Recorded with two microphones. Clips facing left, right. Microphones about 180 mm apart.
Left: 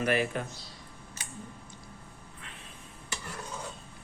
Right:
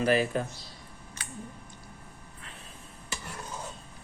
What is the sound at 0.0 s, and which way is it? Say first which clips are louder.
Speech: right 3 dB; 35° right (ahead or behind).